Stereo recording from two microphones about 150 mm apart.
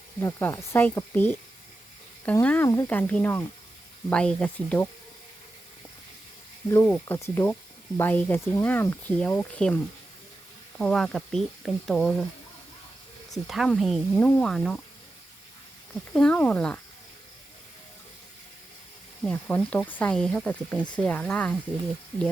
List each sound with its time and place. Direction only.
0.2 s speech: 20° left (ahead or behind)
6.7 s speech: 15° left (ahead or behind)
10.8 s speech: 5° left (ahead or behind)
13.3 s speech: centre (ahead or behind)
16.1 s speech: 5° left (ahead or behind)
19.2 s speech: 10° left (ahead or behind)